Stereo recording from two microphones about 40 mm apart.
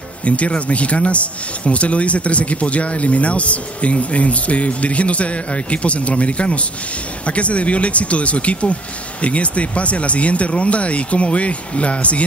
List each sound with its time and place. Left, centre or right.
0.2 s speech: left